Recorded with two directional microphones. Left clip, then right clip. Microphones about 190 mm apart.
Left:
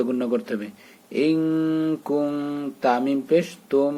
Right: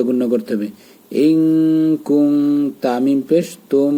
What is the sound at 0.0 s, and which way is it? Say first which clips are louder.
Speech: right 7 dB; 20° right (ahead or behind).